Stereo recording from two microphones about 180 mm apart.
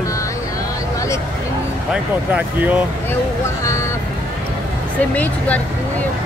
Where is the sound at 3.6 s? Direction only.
15° left (ahead or behind).